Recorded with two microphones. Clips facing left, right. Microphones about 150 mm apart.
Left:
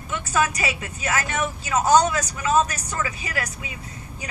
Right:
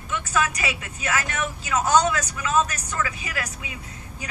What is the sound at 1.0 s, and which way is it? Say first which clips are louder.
Speech: left 2 dB; 20° left (ahead or behind).